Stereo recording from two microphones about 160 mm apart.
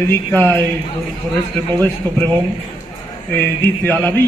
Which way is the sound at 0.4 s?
15° left (ahead or behind).